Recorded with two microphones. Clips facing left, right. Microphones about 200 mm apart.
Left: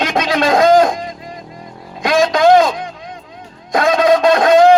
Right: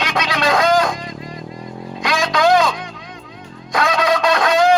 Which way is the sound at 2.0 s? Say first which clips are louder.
Left 5 dB; 50° left (ahead or behind).